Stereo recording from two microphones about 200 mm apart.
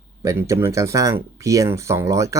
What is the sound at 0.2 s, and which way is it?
Speech, 15° right (ahead or behind).